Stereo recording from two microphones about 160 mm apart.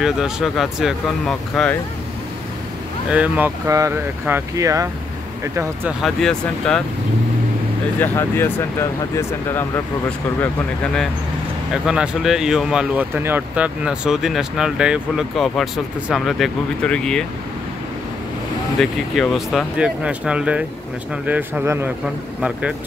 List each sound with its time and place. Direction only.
0.0 s speech: centre (ahead or behind)
3.1 s speech: 10° right (ahead or behind)
6.0 s speech: 5° left (ahead or behind)
8.0 s speech: 15° left (ahead or behind)
11.7 s speech: 5° right (ahead or behind)
18.8 s speech: centre (ahead or behind)